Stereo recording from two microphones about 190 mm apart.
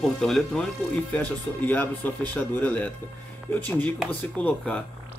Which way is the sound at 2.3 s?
10° left (ahead or behind).